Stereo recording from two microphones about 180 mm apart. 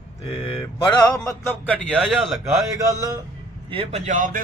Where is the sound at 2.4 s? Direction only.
15° right (ahead or behind).